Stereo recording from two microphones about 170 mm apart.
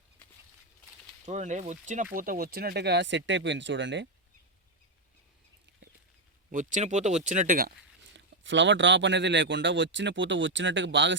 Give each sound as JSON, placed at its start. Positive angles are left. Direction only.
{"t": 1.2, "sound": "speech", "side_deg": -45}
{"t": 2.1, "sound": "speech", "side_deg": -55}
{"t": 6.5, "sound": "speech", "side_deg": -50}
{"t": 8.1, "sound": "speech", "side_deg": -90}